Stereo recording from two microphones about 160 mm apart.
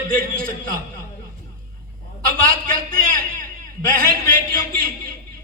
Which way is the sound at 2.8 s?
60° right (ahead or behind).